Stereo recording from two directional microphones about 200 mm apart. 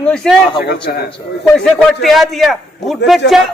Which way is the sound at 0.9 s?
45° left (ahead or behind).